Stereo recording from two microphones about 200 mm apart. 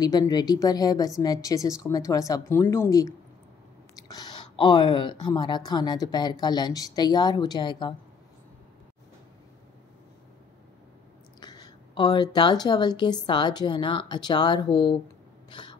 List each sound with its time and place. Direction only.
0.0 s a woman's voice: 20° left (ahead or behind)
11.3 s speech: 20° left (ahead or behind)